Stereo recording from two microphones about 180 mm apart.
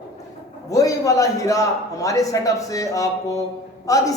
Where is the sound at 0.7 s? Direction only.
20° left (ahead or behind).